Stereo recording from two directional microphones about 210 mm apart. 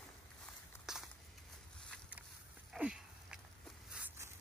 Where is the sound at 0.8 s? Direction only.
Centre (ahead or behind).